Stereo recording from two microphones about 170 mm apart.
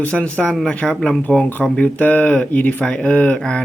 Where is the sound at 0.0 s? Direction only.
10° left (ahead or behind).